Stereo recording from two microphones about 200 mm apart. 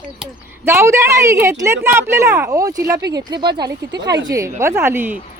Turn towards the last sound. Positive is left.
turn(degrees=-10)  # may be behind; listen again after turning